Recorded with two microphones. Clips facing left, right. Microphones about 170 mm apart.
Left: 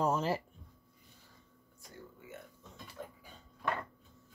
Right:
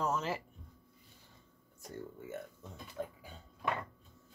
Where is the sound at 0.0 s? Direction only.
30° left (ahead or behind).